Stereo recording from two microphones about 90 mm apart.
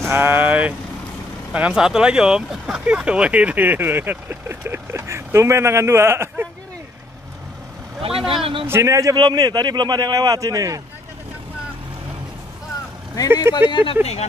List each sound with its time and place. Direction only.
0.0 s speech: 25° right (ahead or behind)
8.0 s speech: 90° right
8.6 s a man's voice: 30° right (ahead or behind)
9.1 s a man's voice: 50° right (ahead or behind)
13.4 s speech: 55° left (ahead or behind)